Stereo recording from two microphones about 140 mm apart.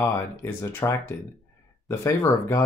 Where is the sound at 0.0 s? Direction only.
20° left (ahead or behind).